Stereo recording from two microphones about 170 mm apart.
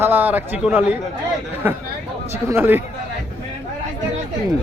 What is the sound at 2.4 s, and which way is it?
Speech, 15° right (ahead or behind).